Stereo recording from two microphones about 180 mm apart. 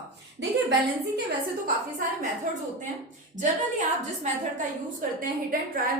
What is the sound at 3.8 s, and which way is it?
Speech, 45° right (ahead or behind).